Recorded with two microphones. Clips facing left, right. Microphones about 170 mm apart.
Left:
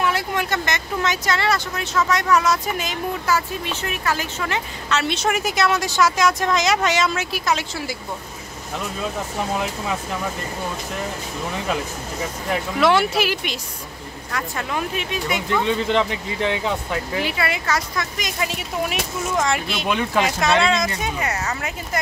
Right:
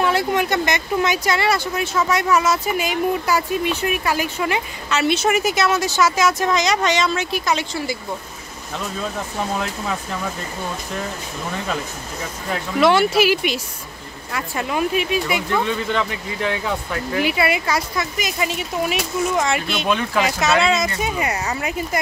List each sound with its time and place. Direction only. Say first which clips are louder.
0.0 s speech: right 4 dB; 25° right (ahead or behind); by 8.0 s centre (ahead or behind)
12.8 s speech: right 3 dB; centre (ahead or behind)
15.6 s speech: left 2 dB; 25° left (ahead or behind)
17.2 s speech: right 4 dB; 10° right (ahead or behind)